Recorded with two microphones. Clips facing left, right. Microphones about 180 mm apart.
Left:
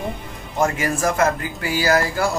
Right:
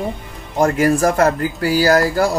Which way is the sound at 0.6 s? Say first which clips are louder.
Right 6 dB; 35° right (ahead or behind).